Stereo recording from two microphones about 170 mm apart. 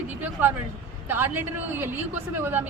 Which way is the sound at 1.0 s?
10° right (ahead or behind).